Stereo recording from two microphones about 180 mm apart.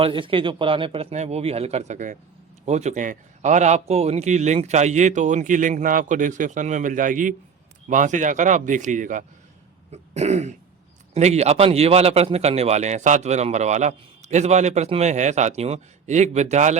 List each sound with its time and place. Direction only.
0.0 s a man's voice: 30° right (ahead or behind); by 9.2 s 45° right (ahead or behind)
9.9 s throat clearing: 40° right (ahead or behind)
11.1 s a man's voice: 35° right (ahead or behind)